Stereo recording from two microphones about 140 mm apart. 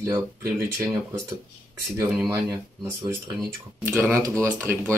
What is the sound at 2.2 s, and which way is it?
Speech, 25° right (ahead or behind).